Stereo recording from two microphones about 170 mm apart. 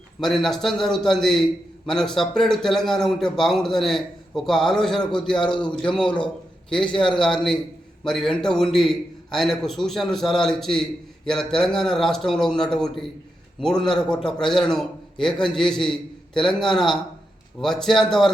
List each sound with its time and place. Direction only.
0.2 s a man's voice: centre (ahead or behind)
5.5 s a man's voice: 30° left (ahead or behind)
5.7 s a man's voice: 5° left (ahead or behind)